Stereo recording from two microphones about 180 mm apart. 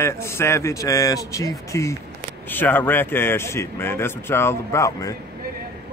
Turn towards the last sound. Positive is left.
turn(degrees=20)  # may be behind; listen again after turning